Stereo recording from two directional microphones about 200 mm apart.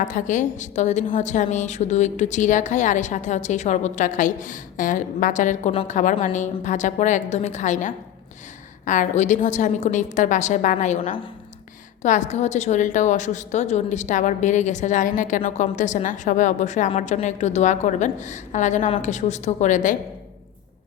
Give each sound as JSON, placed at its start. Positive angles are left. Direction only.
{"t": 0.0, "sound": "a woman's voice", "side_deg": 40}